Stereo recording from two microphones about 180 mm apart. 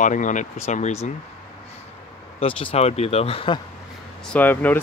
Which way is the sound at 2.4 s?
35° left (ahead or behind).